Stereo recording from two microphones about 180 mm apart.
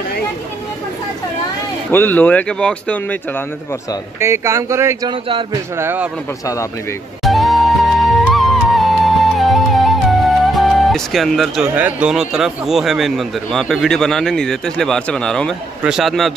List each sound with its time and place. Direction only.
1.9 s speech: 10° left (ahead or behind)
4.2 s speech: 15° right (ahead or behind)
6.4 s speech: 15° left (ahead or behind)
7.2 s music: centre (ahead or behind)
15.8 s a man's voice: centre (ahead or behind)